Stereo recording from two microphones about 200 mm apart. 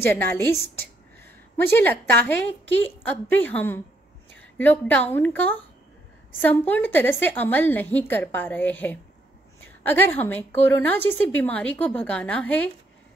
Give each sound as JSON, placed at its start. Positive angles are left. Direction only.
{"t": 0.0, "sound": "a woman's voice", "side_deg": 10}